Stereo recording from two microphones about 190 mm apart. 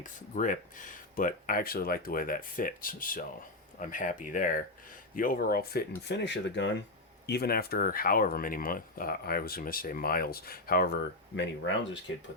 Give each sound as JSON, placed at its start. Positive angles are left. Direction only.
{"t": 0.0, "sound": "speech", "side_deg": 45}
{"t": 7.3, "sound": "speech", "side_deg": 55}